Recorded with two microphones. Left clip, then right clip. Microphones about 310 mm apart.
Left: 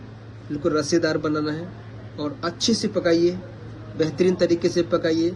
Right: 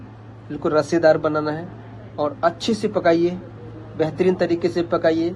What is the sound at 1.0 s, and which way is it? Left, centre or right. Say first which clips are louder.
Speech: right 6 dB; centre.